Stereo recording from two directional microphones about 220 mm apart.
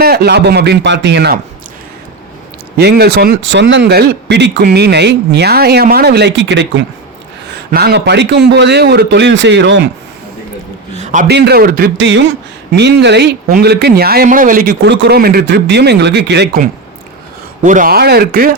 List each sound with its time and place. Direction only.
0.0 s a man's voice: 45° right (ahead or behind)
2.7 s a man's voice: 45° right (ahead or behind)
7.7 s a man's voice: 45° right (ahead or behind)
10.9 s a sound: 35° right (ahead or behind)
11.3 s a man's voice: 50° right (ahead or behind)
17.6 s a man's voice: 35° right (ahead or behind)